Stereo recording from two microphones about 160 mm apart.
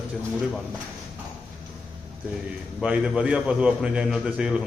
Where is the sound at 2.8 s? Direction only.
5° right (ahead or behind).